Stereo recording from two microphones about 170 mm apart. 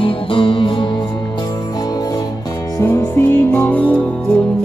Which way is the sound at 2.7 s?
15° left (ahead or behind).